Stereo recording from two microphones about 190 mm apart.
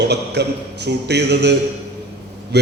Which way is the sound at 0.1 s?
60° right (ahead or behind).